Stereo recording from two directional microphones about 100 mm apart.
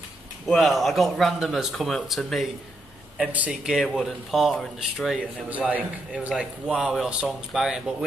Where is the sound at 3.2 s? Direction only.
15° right (ahead or behind).